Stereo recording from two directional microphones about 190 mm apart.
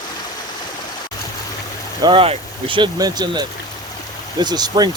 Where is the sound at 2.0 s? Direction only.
30° right (ahead or behind).